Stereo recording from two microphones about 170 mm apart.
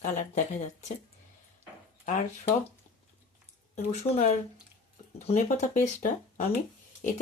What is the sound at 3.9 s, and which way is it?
Speech, 40° left (ahead or behind).